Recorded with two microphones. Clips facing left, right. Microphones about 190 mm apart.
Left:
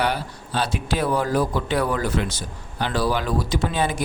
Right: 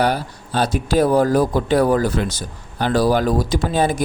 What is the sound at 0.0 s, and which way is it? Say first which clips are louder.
Speech: right 5 dB; 40° right (ahead or behind).